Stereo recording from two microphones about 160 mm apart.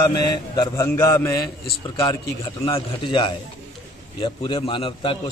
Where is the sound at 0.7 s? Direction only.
20° left (ahead or behind).